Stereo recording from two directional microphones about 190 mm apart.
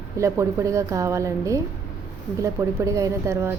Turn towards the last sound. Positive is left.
turn(degrees=-15)  # may be behind; listen again after turning